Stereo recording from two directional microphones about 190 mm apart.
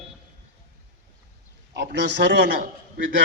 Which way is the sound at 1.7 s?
65° right (ahead or behind).